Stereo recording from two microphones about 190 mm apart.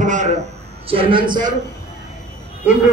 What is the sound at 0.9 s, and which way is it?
Speech, 25° right (ahead or behind).